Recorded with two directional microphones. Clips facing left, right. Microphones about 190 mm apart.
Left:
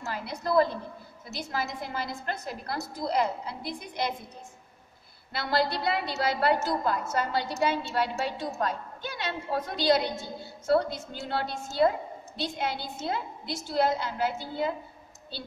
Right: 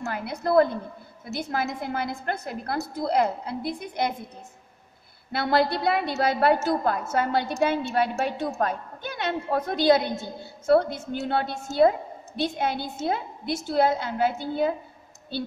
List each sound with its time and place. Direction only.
0.0 s a woman's voice: 55° right (ahead or behind)
5.3 s a woman's voice: 55° right (ahead or behind)
11.1 s a woman's voice: 55° right (ahead or behind)